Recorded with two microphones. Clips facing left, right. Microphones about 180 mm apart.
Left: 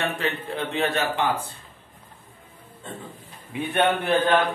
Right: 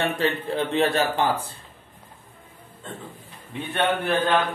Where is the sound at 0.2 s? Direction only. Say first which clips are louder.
Right 4 dB; 35° right (ahead or behind).